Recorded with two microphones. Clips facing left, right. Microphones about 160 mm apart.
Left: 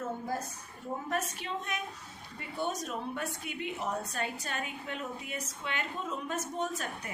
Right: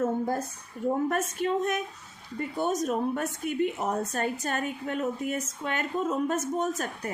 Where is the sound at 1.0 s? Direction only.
50° right (ahead or behind).